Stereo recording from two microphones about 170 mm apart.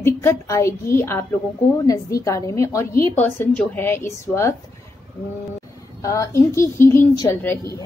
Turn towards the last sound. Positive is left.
turn(degrees=15)  # may be behind; listen again after turning